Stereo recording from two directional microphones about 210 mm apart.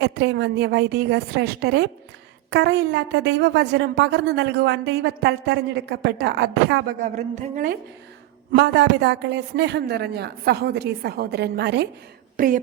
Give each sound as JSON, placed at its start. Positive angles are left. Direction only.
{"t": 0.0, "sound": "a woman's voice", "side_deg": -55}
{"t": 7.0, "sound": "speech", "side_deg": -35}
{"t": 8.5, "sound": "a woman's voice", "side_deg": -55}
{"t": 12.4, "sound": "a woman's voice", "side_deg": -40}